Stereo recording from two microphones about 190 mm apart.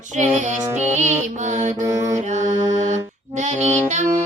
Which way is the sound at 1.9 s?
15° right (ahead or behind).